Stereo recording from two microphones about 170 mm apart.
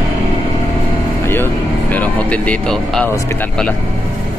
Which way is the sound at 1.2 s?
15° left (ahead or behind).